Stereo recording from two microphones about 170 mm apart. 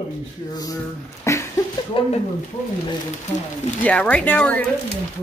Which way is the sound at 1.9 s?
30° left (ahead or behind).